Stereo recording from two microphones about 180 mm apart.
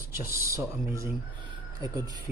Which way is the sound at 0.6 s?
15° right (ahead or behind).